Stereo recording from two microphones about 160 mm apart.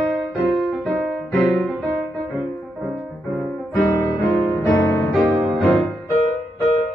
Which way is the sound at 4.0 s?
20° left (ahead or behind).